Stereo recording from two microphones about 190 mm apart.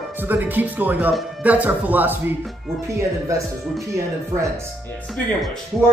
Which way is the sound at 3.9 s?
15° right (ahead or behind).